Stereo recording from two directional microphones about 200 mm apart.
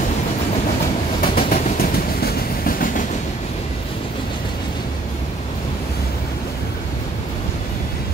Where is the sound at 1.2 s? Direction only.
45° left (ahead or behind).